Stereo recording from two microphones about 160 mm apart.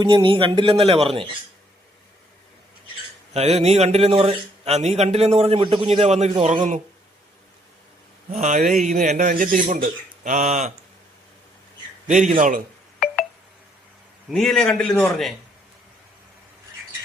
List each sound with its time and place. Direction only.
0.0 s speech: 30° right (ahead or behind)
3.3 s speech: 40° right (ahead or behind)
5.9 s speech: 45° right (ahead or behind)
8.3 s speech: 50° right (ahead or behind)
12.0 s a man's voice: 50° right (ahead or behind)
14.3 s a man's voice: centre (ahead or behind)